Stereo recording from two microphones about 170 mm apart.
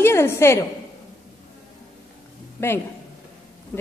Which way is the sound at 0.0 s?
15° left (ahead or behind).